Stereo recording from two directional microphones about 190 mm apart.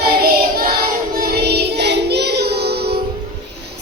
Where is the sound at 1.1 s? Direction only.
55° right (ahead or behind).